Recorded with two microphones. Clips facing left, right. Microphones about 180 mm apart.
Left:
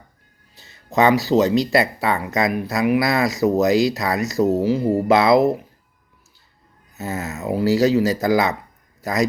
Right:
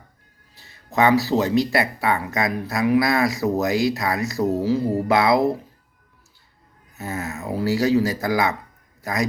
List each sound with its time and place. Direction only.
0.6 s speech: 25° left (ahead or behind)
2.5 s speech: 15° left (ahead or behind)
6.9 s speech: 20° left (ahead or behind)